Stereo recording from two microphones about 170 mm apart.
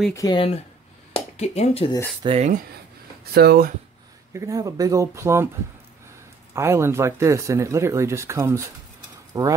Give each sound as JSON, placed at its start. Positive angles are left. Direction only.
{"t": 0.1, "sound": "speech", "side_deg": 20}
{"t": 1.1, "sound": "speech", "side_deg": 40}
{"t": 2.2, "sound": "speech", "side_deg": -35}
{"t": 3.3, "sound": "speech", "side_deg": -65}
{"t": 4.3, "sound": "speech", "side_deg": -20}
{"t": 6.5, "sound": "speech", "side_deg": -15}